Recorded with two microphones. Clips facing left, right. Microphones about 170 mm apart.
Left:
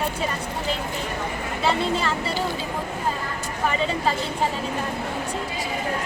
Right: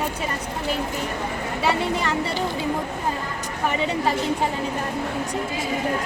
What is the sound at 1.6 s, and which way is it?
Speech, 15° right (ahead or behind).